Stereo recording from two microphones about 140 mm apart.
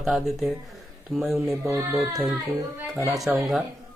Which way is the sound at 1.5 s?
20° right (ahead or behind).